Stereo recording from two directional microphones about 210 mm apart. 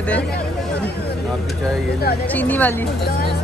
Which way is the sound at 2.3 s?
10° left (ahead or behind).